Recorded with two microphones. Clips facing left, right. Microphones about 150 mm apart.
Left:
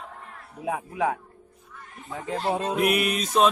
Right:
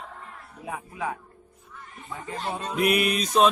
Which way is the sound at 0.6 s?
75° left (ahead or behind).